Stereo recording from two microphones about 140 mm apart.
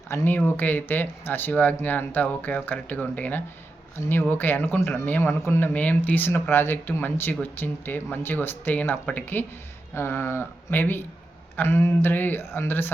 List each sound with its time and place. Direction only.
0.1 s speech: 15° left (ahead or behind)